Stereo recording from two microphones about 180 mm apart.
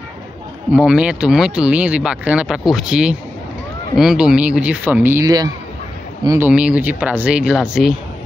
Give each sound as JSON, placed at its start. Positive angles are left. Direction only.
{"t": 0.7, "sound": "speech", "side_deg": -5}